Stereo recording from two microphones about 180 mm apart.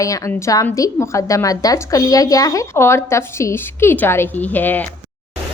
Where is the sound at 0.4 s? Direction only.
20° left (ahead or behind).